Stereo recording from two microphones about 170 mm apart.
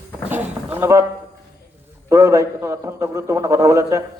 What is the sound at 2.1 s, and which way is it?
A man's voice, 20° right (ahead or behind).